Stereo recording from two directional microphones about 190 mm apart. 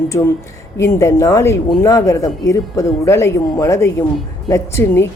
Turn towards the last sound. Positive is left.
turn(degrees=15)  # may be behind; listen again after turning